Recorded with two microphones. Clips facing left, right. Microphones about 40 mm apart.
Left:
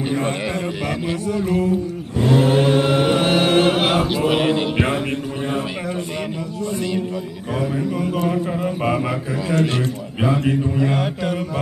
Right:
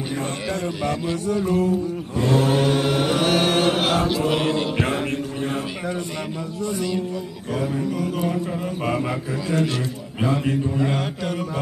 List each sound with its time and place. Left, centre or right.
0.8 s mantra: centre
2.1 s chant: centre
8.3 s mantra: centre
10.2 s mantra: centre